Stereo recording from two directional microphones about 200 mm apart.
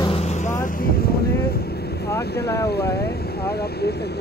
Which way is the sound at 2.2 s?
55° left (ahead or behind).